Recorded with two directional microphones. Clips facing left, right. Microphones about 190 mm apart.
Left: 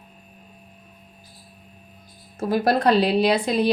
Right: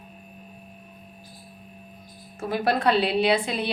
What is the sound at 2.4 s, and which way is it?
A woman's voice, 40° left (ahead or behind).